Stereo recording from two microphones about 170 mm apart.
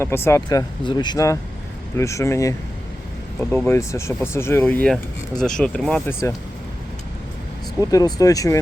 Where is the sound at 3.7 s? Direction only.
15° left (ahead or behind).